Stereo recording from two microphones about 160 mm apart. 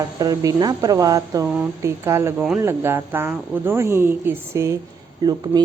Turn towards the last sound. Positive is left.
turn(degrees=-25)  # may be behind; listen again after turning